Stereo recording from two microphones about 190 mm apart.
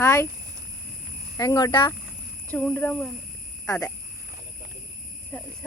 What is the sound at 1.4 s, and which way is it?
Speech, 20° left (ahead or behind).